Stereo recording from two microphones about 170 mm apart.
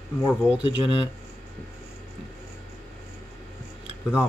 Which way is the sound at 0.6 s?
30° left (ahead or behind).